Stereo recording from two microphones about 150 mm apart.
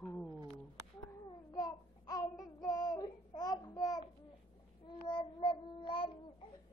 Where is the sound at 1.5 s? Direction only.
25° left (ahead or behind).